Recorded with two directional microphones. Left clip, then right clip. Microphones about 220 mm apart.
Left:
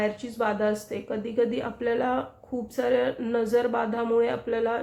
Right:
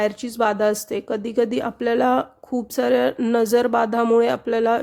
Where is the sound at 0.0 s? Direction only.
50° right (ahead or behind).